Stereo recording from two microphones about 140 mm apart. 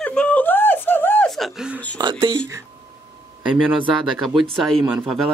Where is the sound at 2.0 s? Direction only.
35° right (ahead or behind).